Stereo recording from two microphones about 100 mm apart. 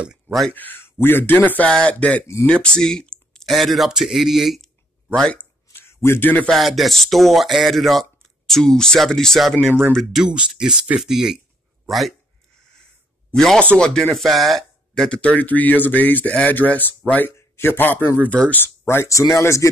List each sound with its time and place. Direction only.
0.3 s speech: centre (ahead or behind)
0.6 s speech: 20° left (ahead or behind); by 4.6 s centre (ahead or behind)
5.7 s a sound: 25° left (ahead or behind)
6.4 s speech: centre (ahead or behind)
13.3 s speech: 5° left (ahead or behind); by 19.7 s 30° left (ahead or behind)